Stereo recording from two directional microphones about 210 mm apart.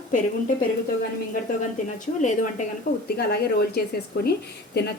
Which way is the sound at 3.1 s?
50° left (ahead or behind).